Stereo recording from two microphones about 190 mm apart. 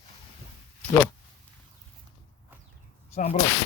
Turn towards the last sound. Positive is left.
turn(degrees=35)  # may be behind; listen again after turning